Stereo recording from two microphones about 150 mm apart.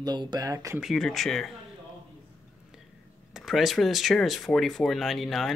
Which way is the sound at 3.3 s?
Centre (ahead or behind).